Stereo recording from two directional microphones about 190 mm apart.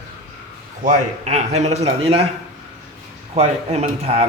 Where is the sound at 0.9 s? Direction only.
35° right (ahead or behind).